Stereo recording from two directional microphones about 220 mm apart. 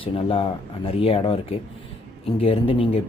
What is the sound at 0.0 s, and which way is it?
A man's voice, 25° left (ahead or behind).